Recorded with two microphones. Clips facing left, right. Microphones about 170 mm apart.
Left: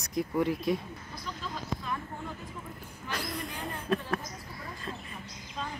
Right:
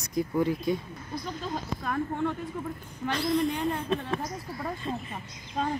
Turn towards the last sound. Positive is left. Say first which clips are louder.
# right 8 dB
turn(degrees=-60)  # may be behind; listen again after turning